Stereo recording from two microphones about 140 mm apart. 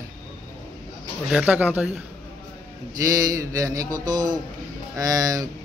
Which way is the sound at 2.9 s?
25° right (ahead or behind).